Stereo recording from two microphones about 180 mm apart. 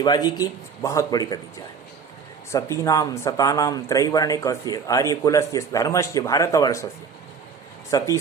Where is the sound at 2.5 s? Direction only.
15° left (ahead or behind).